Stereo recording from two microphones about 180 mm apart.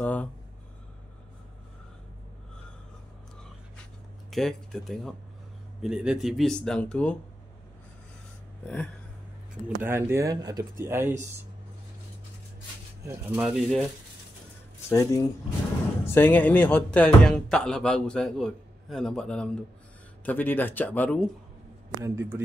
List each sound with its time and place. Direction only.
0.0 s a sound: 10° left (ahead or behind)
4.3 s speech: 5° left (ahead or behind)
8.6 s speech: 5° left (ahead or behind)
9.8 s speech: 15° right (ahead or behind)
13.0 s speech: 15° right (ahead or behind)
13.4 s speech: centre (ahead or behind)
14.9 s speech: 15° left (ahead or behind)
22.0 s speech: 15° right (ahead or behind)